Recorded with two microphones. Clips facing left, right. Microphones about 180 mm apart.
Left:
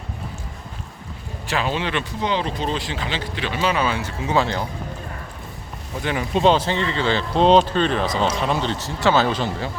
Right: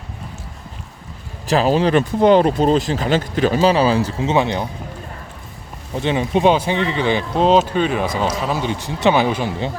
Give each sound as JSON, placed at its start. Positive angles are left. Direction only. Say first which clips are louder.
{"t": 1.5, "sound": "speech", "louder": "right 9 dB", "side_deg": -40}
{"t": 4.3, "sound": "speech", "louder": "right 2 dB", "side_deg": -20}
{"t": 6.0, "sound": "speech", "louder": "right 4 dB", "side_deg": -25}
{"t": 7.3, "sound": "speech", "louder": "even", "side_deg": -5}